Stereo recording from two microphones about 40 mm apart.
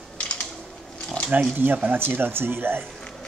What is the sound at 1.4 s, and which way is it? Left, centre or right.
Speech, right.